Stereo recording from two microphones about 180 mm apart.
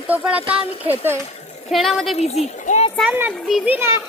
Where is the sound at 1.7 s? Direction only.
Centre (ahead or behind).